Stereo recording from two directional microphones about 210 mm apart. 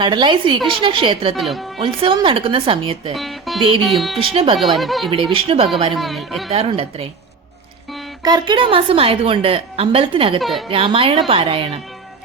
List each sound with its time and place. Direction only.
0.0 s a woman's voice: 20° right (ahead or behind)
1.4 s speech: centre (ahead or behind)
1.8 s a woman's voice: 25° right (ahead or behind)
3.2 s speech: centre (ahead or behind)
3.6 s a woman's voice: 25° right (ahead or behind)
3.8 s speech: centre (ahead or behind)
4.2 s a woman's voice: 25° right (ahead or behind)
4.8 s speech: centre (ahead or behind)
5.1 s a woman's voice: 25° right (ahead or behind)
5.9 s speech: centre (ahead or behind)
6.5 s a woman's voice: 30° right (ahead or behind)
8.2 s a woman's voice: 20° right (ahead or behind)